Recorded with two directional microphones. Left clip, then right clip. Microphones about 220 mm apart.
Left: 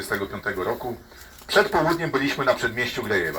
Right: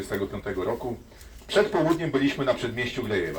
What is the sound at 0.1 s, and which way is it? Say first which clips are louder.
Speech: left 4 dB; 5° left (ahead or behind).